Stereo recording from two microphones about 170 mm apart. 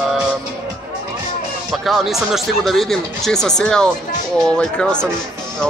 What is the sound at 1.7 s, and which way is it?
Speech, centre (ahead or behind).